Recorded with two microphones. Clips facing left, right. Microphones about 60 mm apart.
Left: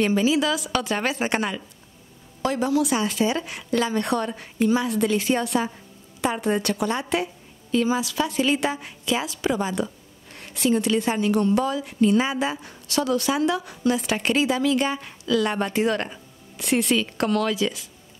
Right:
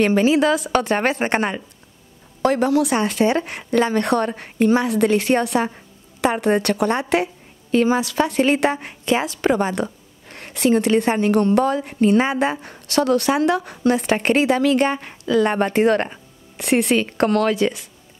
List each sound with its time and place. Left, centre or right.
0.0 s speech: right
2.4 s speech: right
3.9 s a woman's voice: right
16.5 s speech: right